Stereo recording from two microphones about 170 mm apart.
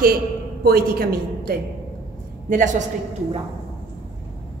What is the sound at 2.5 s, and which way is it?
Speech, 50° right (ahead or behind).